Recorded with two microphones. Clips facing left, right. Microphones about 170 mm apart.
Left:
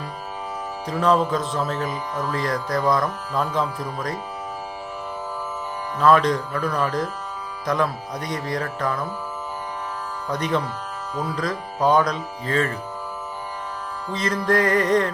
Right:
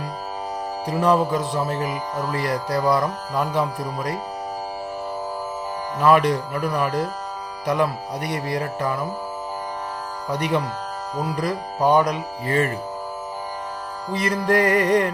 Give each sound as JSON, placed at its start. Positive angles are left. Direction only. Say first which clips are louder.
{"t": 0.9, "sound": "speech", "louder": "right 1 dB", "side_deg": -10}
{"t": 6.0, "sound": "speech", "louder": "even", "side_deg": -15}
{"t": 10.3, "sound": "speech", "louder": "right 1 dB", "side_deg": -10}
{"t": 11.1, "sound": "speech", "louder": "right 1 dB", "side_deg": -40}
{"t": 11.3, "sound": "speech", "louder": "right 2 dB", "side_deg": -15}
{"t": 14.1, "sound": "speech", "louder": "right 1 dB", "side_deg": -15}